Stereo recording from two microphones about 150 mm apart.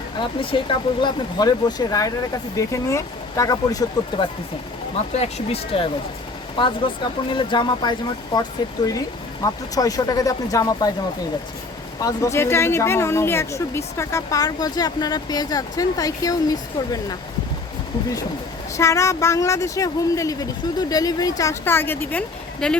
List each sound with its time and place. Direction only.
0.2 s speech: 35° left (ahead or behind)
5.2 s speech: 40° left (ahead or behind)
11.9 s speech: 20° left (ahead or behind)
18.8 s speech: 20° left (ahead or behind)